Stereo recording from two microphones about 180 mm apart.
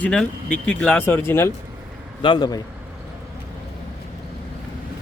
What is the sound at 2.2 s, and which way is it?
Speech, 25° left (ahead or behind).